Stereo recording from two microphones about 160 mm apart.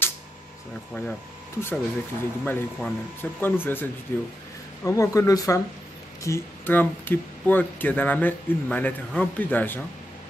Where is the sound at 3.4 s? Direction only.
15° left (ahead or behind).